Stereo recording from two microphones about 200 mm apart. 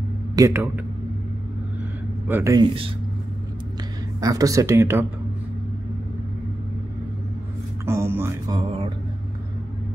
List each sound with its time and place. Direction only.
0.4 s speech: 10° right (ahead or behind)
2.2 s speech: 10° right (ahead or behind)
4.2 s speech: 20° right (ahead or behind)
7.8 s speech: 10° right (ahead or behind)
8.5 s mantra: 25° right (ahead or behind)